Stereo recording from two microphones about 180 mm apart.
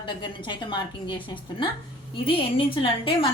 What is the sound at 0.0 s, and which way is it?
A woman's voice, 25° left (ahead or behind).